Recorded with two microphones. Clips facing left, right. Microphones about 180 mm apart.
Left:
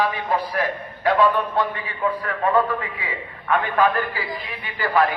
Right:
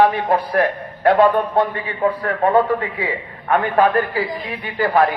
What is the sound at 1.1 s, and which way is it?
A man's voice, 45° right (ahead or behind).